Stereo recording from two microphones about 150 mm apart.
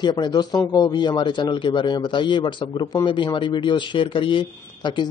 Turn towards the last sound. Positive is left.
turn(degrees=30)  # may be behind; listen again after turning